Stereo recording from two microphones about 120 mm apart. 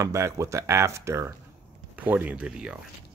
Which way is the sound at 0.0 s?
25° right (ahead or behind).